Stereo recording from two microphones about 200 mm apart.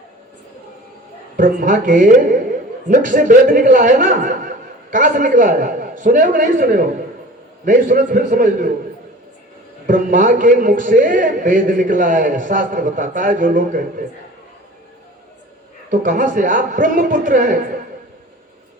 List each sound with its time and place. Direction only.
1.4 s a woman's voice: 40° right (ahead or behind)
9.8 s a man's voice: 40° right (ahead or behind)
15.9 s a man's voice: 40° right (ahead or behind)